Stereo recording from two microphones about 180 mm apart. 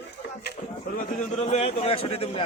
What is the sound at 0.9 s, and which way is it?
A man's voice, 40° left (ahead or behind).